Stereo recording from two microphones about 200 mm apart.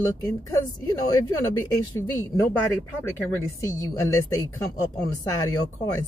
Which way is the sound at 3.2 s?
15° left (ahead or behind).